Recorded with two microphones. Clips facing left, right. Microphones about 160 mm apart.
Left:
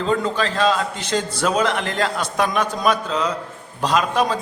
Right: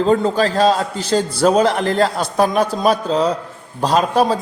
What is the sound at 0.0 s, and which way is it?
A man's voice, 35° right (ahead or behind).